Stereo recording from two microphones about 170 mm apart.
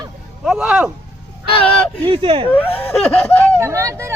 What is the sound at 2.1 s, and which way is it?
Speech, 30° right (ahead or behind).